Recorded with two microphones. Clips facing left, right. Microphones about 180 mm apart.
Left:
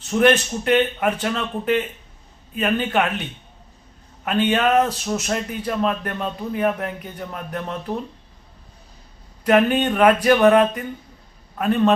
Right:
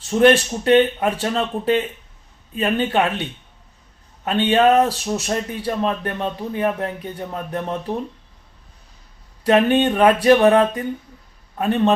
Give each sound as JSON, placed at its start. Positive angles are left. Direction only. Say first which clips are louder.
{"t": 0.2, "sound": "speech", "louder": "right 3 dB", "side_deg": -30}
{"t": 4.3, "sound": "speech", "louder": "right 3 dB", "side_deg": -30}
{"t": 9.4, "sound": "speech", "louder": "right 2 dB", "side_deg": -30}